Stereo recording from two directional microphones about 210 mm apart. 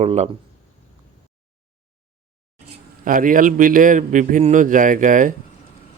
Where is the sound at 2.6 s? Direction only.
40° right (ahead or behind).